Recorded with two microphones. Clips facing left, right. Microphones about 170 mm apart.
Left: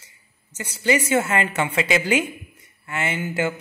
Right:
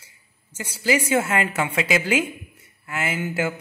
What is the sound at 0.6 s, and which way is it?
A woman's voice, 10° right (ahead or behind).